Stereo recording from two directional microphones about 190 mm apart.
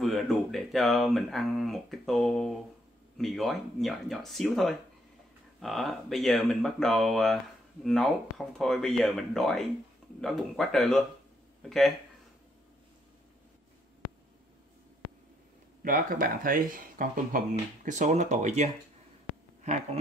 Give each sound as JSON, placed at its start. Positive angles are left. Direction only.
{"t": 0.0, "sound": "speech", "side_deg": 0}
{"t": 15.8, "sound": "speech", "side_deg": -45}